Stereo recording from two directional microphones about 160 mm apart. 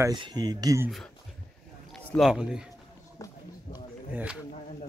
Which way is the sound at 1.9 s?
Centre (ahead or behind).